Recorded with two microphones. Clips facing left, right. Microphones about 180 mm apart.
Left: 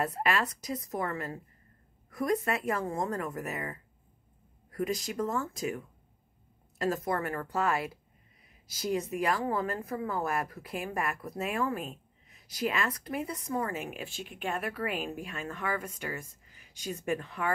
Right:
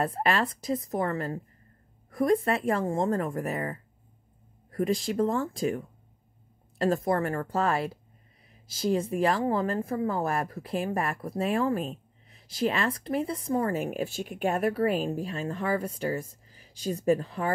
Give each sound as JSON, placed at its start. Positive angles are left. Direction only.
{"t": 0.0, "sound": "a woman's voice", "side_deg": -30}